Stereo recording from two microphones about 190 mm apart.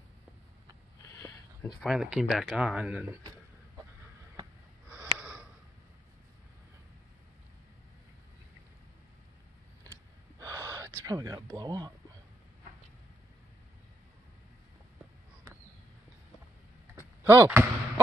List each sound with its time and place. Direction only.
1.2 s a sound: 20° left (ahead or behind)
1.8 s speech: centre (ahead or behind)
4.9 s a sound: 5° right (ahead or behind)
10.4 s gasp: 15° right (ahead or behind)
11.1 s speech: 20° right (ahead or behind)
17.2 s speech: 10° right (ahead or behind)